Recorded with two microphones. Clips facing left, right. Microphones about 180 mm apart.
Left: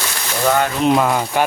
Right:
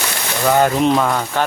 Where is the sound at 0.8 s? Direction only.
5° left (ahead or behind).